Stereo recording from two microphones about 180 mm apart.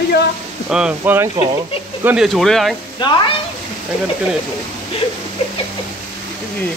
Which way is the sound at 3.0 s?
25° left (ahead or behind).